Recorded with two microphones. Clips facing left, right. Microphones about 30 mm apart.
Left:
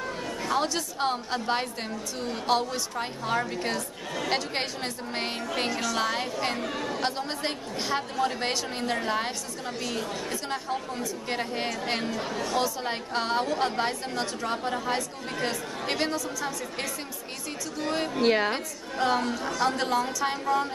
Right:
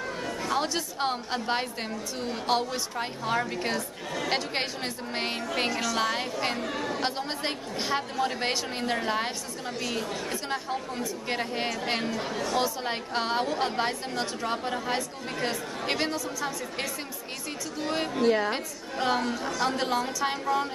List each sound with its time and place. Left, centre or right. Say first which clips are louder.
0.4 s chatter: left 2 dB; centre
0.7 s a woman's voice: left 1 dB; centre
18.2 s a woman's voice: left 1 dB; left
18.5 s a woman's voice: even; centre